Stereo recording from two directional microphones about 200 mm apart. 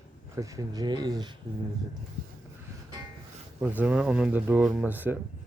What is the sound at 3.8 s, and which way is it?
Speech, 5° right (ahead or behind).